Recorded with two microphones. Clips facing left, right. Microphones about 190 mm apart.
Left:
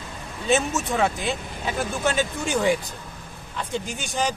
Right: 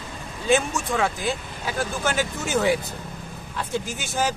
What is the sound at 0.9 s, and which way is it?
A man's voice, centre (ahead or behind).